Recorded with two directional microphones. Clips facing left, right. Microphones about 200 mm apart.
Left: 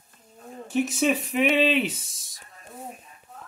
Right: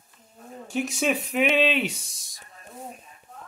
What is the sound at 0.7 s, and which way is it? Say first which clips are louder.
Speech: left 2 dB; centre (ahead or behind).